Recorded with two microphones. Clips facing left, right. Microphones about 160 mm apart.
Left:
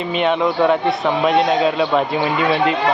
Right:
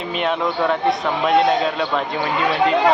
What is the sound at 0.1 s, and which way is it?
A man's voice, centre (ahead or behind).